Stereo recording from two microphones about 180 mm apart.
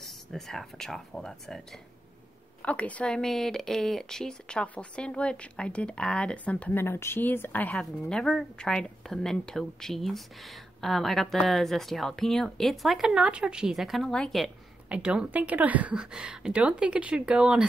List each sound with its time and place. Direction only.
0.0 s speech: centre (ahead or behind)